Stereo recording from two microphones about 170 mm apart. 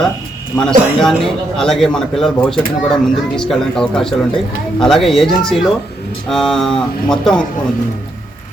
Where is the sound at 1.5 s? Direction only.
5° left (ahead or behind).